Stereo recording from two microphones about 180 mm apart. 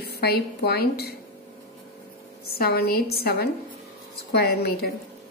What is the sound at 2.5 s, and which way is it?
Speech, 60° left (ahead or behind).